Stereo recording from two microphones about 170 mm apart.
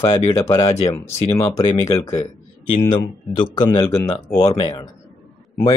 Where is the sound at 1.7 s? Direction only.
20° left (ahead or behind).